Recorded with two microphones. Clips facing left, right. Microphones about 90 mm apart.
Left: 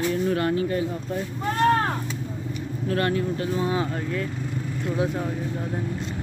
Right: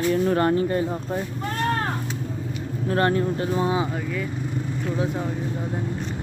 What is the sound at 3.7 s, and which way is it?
Speech, 15° right (ahead or behind).